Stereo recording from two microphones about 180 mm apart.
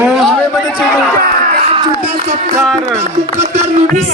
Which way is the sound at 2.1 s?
35° right (ahead or behind).